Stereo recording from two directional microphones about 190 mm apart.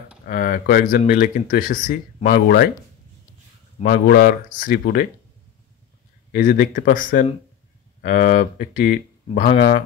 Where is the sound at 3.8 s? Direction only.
55° left (ahead or behind).